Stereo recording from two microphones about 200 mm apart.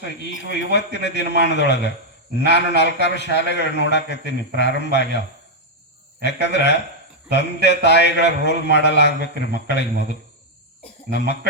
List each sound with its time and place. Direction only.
0.5 s a man's voice: 60° left (ahead or behind)
6.2 s a man's voice: 60° left (ahead or behind)